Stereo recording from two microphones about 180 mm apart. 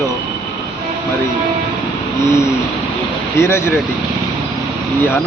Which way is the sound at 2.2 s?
15° left (ahead or behind).